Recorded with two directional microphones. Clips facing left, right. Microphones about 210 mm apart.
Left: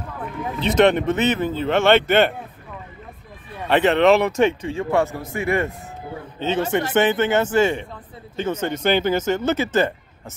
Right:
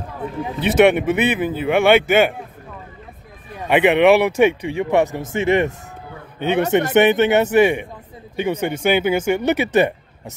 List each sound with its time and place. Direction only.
0.7 s speech: 10° right (ahead or behind)
3.6 s speech: 15° right (ahead or behind)
6.7 s speech: 20° right (ahead or behind)